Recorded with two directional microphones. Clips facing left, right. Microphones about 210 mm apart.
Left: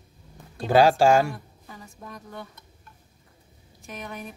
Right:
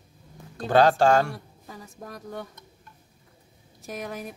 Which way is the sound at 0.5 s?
10° left (ahead or behind).